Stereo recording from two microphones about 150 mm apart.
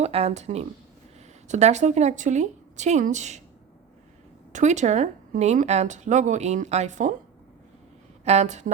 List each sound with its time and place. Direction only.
0.0 s speech: 45° right (ahead or behind)
4.5 s speech: 50° right (ahead or behind)
8.2 s speech: 45° right (ahead or behind)